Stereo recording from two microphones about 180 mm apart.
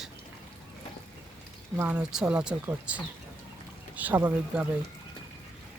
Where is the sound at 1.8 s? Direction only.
5° right (ahead or behind).